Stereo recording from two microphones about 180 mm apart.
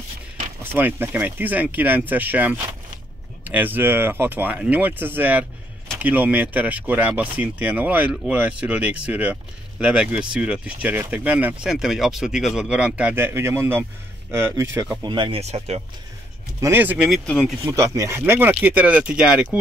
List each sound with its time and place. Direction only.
0.7 s speech: 10° right (ahead or behind)
15.0 s speech: 25° right (ahead or behind)
16.6 s speech: 10° right (ahead or behind)